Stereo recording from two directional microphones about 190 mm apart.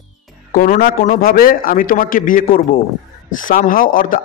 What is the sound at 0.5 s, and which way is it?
Speech, 45° left (ahead or behind).